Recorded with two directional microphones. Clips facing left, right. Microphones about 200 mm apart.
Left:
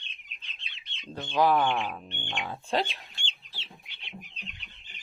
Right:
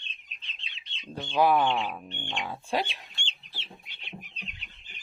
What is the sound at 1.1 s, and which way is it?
Speech, 10° right (ahead or behind).